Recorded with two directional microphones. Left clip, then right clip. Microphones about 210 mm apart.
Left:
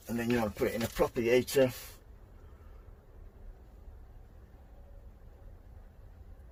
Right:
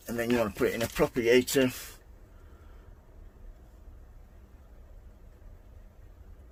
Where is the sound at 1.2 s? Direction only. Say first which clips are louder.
Right 3 dB; 50° right (ahead or behind).